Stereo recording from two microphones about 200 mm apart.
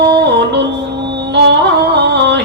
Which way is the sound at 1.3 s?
60° right (ahead or behind).